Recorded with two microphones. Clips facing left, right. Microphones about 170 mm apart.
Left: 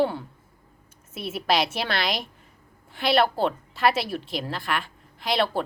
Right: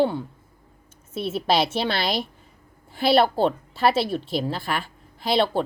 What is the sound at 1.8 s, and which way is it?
A woman's voice, centre (ahead or behind).